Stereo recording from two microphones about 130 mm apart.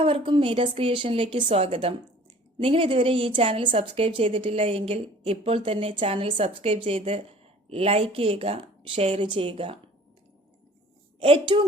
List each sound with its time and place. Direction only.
0.0 s a woman's voice: 40° right (ahead or behind)
11.2 s a woman's voice: 45° right (ahead or behind)